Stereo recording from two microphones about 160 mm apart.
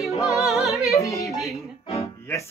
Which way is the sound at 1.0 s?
20° left (ahead or behind).